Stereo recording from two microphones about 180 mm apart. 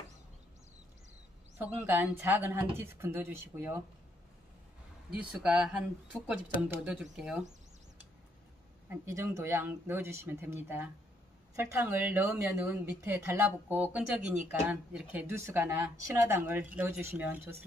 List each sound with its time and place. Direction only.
1.6 s speech: 10° right (ahead or behind)
5.1 s speech: 5° right (ahead or behind)
8.8 s speech: 15° right (ahead or behind)